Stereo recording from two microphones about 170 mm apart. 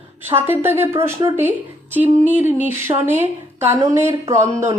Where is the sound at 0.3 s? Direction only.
15° right (ahead or behind).